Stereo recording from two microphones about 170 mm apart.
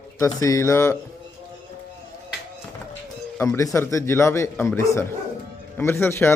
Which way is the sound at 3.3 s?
15° left (ahead or behind).